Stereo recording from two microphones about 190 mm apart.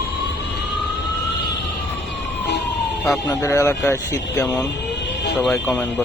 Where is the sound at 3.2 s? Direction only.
15° left (ahead or behind).